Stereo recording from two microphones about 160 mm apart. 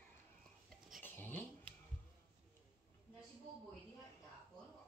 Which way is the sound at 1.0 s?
10° left (ahead or behind).